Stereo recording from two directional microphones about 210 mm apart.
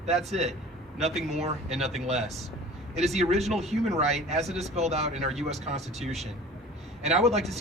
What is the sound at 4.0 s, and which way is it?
Speech, 30° right (ahead or behind).